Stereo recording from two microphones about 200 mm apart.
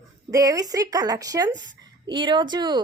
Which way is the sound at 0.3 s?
15° right (ahead or behind).